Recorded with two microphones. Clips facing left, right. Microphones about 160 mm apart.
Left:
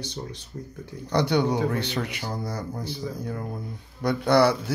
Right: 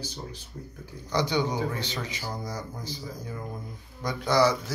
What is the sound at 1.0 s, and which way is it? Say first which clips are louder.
A man's voice: left 4 dB; 60° left (ahead or behind).